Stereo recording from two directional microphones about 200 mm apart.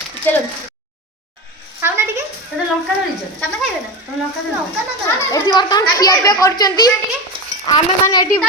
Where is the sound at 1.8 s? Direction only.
10° right (ahead or behind).